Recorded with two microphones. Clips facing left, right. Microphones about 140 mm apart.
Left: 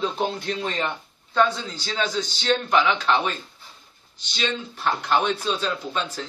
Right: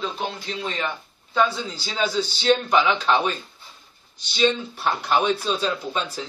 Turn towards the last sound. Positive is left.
turn(degrees=-5)  # may be behind; listen again after turning